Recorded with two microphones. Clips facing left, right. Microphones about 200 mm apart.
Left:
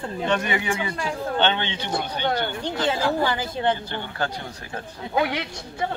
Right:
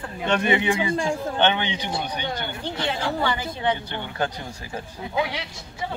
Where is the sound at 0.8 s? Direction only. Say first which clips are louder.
Right 3 dB; 20° right (ahead or behind).